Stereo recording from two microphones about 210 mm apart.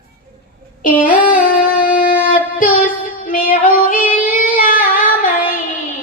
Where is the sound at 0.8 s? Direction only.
40° left (ahead or behind).